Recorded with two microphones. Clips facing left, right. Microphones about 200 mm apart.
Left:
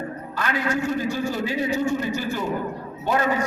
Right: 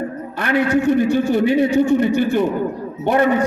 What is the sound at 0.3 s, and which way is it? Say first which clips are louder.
A man's voice: right 8 dB; 60° right (ahead or behind).